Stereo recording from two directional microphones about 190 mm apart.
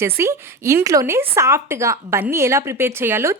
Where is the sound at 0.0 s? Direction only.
15° right (ahead or behind).